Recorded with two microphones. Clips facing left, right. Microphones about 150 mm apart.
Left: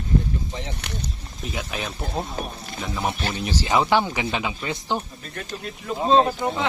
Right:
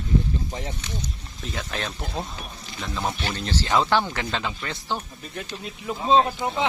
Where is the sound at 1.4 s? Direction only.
5° left (ahead or behind).